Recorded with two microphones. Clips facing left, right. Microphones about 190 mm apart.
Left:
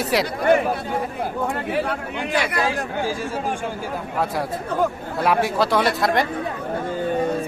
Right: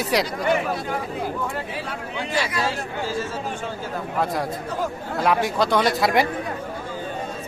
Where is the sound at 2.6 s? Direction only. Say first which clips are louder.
Left 3 dB; 15° left (ahead or behind).